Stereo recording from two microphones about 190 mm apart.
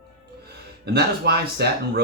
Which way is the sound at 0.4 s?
60° right (ahead or behind).